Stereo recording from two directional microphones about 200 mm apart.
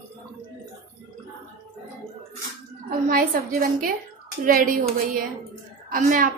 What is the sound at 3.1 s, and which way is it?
A woman's voice, 45° right (ahead or behind).